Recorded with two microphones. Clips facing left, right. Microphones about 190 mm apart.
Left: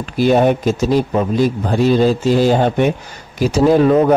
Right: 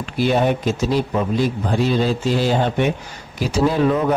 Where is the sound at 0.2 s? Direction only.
45° left (ahead or behind).